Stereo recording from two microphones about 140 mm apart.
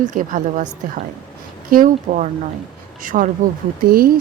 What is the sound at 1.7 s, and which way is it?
Speech, 80° right.